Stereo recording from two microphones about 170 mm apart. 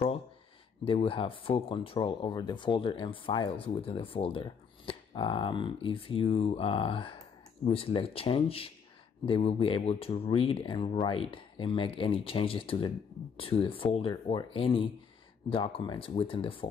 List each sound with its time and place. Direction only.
0.8 s speech: 30° left (ahead or behind)